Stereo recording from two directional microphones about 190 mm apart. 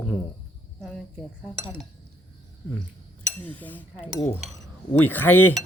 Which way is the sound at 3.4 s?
10° left (ahead or behind).